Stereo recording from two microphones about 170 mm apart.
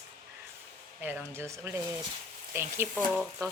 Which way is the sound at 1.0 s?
10° right (ahead or behind).